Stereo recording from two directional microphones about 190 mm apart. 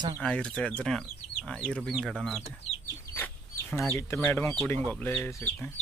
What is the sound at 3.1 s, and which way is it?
Chicken, 5° left (ahead or behind).